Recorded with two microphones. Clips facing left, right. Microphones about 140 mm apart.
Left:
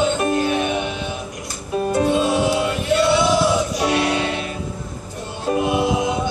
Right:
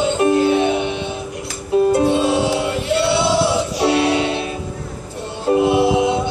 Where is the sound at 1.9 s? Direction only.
30° right (ahead or behind).